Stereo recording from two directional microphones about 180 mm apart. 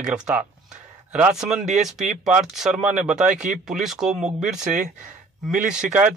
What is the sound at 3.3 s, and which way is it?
Speech, 45° right (ahead or behind).